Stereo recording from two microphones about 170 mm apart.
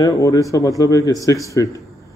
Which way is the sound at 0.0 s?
20° left (ahead or behind).